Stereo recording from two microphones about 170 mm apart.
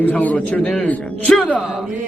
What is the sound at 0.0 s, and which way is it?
A man's voice, 10° left (ahead or behind).